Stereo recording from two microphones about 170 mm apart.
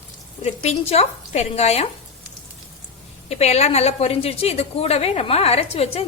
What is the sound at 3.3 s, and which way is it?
A woman's voice, 40° left (ahead or behind).